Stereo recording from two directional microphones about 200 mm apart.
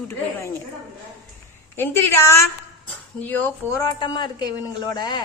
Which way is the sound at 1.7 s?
10° left (ahead or behind).